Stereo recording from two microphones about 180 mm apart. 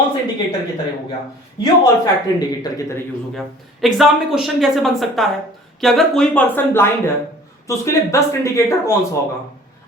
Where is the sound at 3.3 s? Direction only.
Centre (ahead or behind).